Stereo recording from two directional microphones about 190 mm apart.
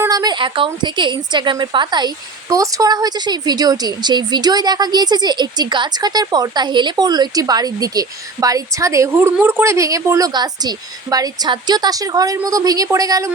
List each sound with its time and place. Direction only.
0.0 s a woman's voice: 20° right (ahead or behind)